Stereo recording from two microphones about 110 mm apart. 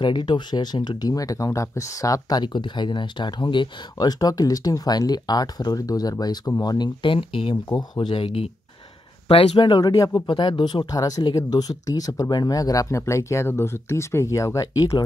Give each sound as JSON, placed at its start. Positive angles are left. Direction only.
{"t": 0.0, "sound": "speech", "side_deg": 45}
{"t": 9.6, "sound": "speech", "side_deg": 40}
{"t": 10.2, "sound": "speech", "side_deg": 45}